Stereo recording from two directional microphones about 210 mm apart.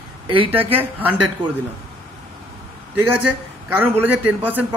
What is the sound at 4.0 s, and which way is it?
Speech, 10° right (ahead or behind).